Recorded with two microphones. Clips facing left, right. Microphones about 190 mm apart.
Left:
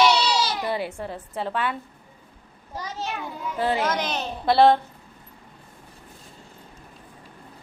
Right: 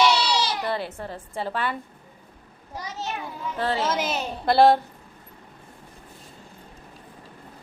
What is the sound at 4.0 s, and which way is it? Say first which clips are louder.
Speech: right 1 dB; 5° right (ahead or behind).